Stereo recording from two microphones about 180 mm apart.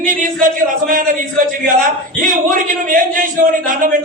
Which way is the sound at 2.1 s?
50° right (ahead or behind).